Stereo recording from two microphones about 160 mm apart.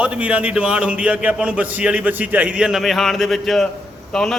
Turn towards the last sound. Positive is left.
turn(degrees=5)  # may be behind; listen again after turning